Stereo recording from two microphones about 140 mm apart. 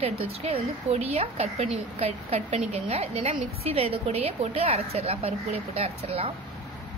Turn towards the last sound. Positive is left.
turn(degrees=-45)  # may be behind; listen again after turning